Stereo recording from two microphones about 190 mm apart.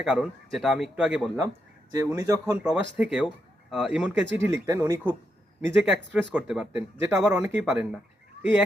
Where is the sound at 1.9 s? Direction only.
20° right (ahead or behind).